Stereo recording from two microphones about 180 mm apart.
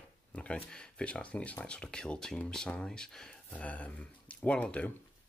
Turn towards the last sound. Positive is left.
turn(degrees=5)  # may be behind; listen again after turning